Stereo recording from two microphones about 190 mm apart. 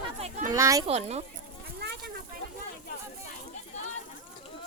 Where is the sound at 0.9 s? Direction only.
35° right (ahead or behind).